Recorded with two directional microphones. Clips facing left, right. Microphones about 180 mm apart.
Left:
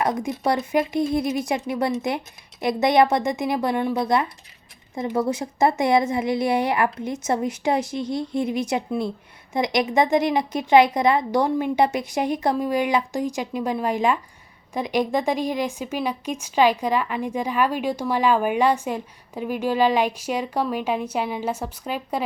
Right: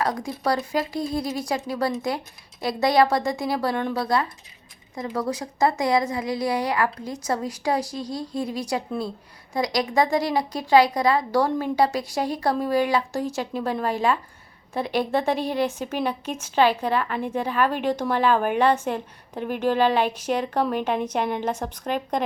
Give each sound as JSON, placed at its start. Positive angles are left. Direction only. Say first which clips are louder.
{"t": 0.0, "sound": "a woman's voice", "louder": "left 2 dB", "side_deg": 20}